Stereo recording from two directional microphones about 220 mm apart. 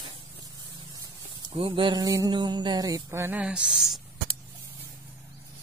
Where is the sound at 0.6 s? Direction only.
20° right (ahead or behind); by 4.0 s centre (ahead or behind).